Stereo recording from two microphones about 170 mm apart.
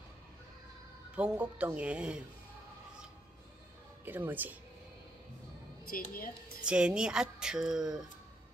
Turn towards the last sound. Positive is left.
turn(degrees=-5)  # may be behind; listen again after turning